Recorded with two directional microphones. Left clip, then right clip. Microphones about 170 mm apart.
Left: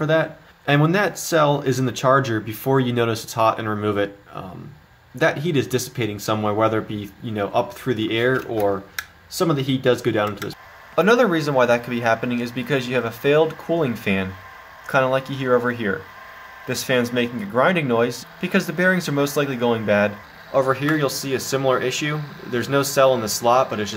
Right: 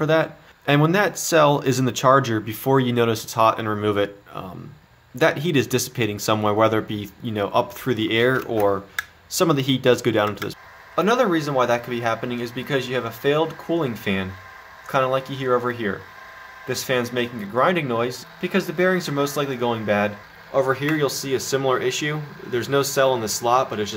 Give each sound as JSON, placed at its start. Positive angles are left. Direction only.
{"t": 0.0, "sound": "speech", "side_deg": -10}
{"t": 11.0, "sound": "speech", "side_deg": 0}